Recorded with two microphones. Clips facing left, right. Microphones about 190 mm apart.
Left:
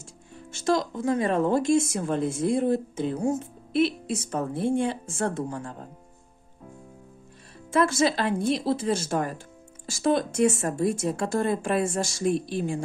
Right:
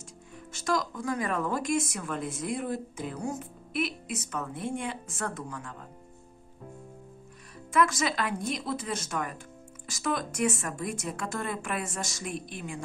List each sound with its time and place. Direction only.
0.5 s speech: 25° left (ahead or behind)
7.7 s speech: 30° left (ahead or behind)